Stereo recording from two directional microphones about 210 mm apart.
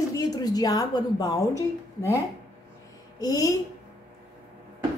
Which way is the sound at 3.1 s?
15° left (ahead or behind).